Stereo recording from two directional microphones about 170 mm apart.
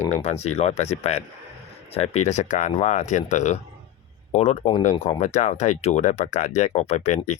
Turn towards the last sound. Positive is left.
turn(degrees=40)  # may be behind; listen again after turning